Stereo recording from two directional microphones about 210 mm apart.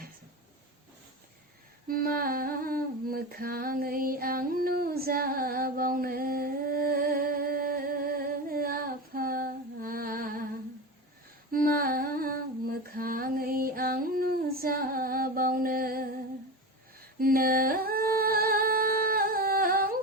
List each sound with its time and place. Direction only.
1.9 s humming: 45° right (ahead or behind)
11.5 s humming: 45° right (ahead or behind)
17.2 s singing: 45° right (ahead or behind)